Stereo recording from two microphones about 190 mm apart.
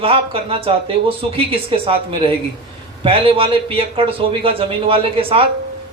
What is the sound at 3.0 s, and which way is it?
Speech, 30° right (ahead or behind).